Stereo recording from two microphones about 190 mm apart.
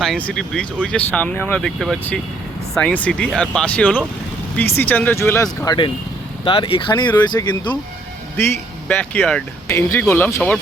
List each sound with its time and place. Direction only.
0.0 s speech: 5° left (ahead or behind); by 7.8 s 25° left (ahead or behind)
8.4 s speech: 10° left (ahead or behind)